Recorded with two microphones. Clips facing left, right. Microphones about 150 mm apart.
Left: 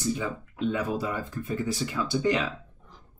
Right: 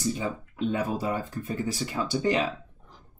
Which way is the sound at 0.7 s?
40° right (ahead or behind).